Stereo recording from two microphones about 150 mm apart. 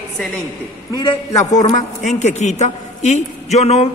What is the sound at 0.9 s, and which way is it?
Speech, 30° left (ahead or behind).